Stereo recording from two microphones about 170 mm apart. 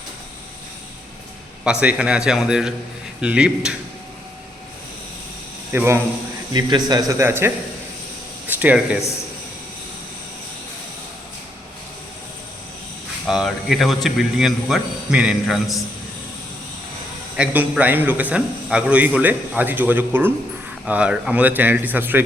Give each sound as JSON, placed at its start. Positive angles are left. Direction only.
{"t": 1.6, "sound": "speech", "side_deg": -5}
{"t": 5.7, "sound": "a man's voice", "side_deg": -15}
{"t": 6.5, "sound": "speech", "side_deg": -25}
{"t": 13.2, "sound": "speech", "side_deg": 0}
{"t": 17.3, "sound": "a man's voice", "side_deg": -10}